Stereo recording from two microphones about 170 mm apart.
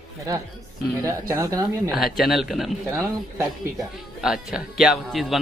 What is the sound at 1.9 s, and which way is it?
Speech, centre (ahead or behind).